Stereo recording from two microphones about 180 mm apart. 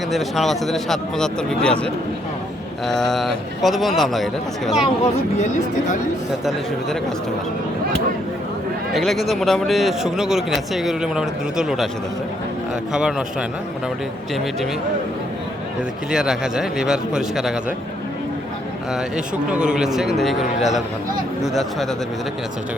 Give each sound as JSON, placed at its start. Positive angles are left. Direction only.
{"t": 0.1, "sound": "a man's voice", "side_deg": 0}
{"t": 5.4, "sound": "speech", "side_deg": 40}
{"t": 8.9, "sound": "a man's voice", "side_deg": 0}
{"t": 12.9, "sound": "a man's voice", "side_deg": -5}
{"t": 16.1, "sound": "a man's voice", "side_deg": -5}
{"t": 18.9, "sound": "a man's voice", "side_deg": -5}